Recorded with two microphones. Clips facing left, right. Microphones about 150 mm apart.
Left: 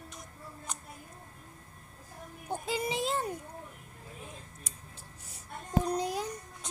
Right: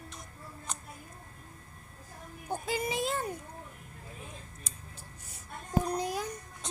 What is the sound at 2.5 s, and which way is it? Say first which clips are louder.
Speech: even; 30° left (ahead or behind).